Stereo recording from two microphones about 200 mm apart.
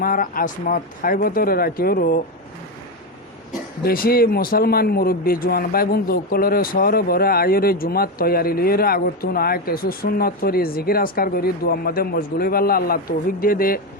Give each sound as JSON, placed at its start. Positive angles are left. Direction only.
{"t": 0.0, "sound": "speech", "side_deg": 45}
{"t": 3.8, "sound": "speech", "side_deg": 45}